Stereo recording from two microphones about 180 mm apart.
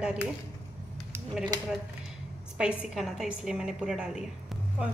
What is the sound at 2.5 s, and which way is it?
A woman's voice, 5° right (ahead or behind).